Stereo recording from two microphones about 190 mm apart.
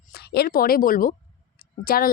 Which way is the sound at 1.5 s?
50° left (ahead or behind).